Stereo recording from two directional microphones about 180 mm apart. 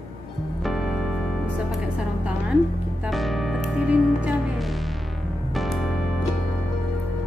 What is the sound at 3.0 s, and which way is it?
Music, centre (ahead or behind).